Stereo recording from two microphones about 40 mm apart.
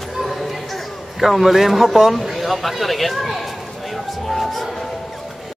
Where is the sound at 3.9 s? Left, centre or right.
Centre.